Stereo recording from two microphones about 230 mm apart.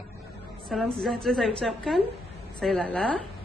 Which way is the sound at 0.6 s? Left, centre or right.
Centre.